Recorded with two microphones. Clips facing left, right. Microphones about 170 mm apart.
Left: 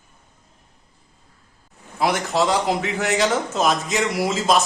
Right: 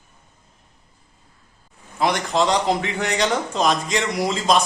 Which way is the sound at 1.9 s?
5° left (ahead or behind).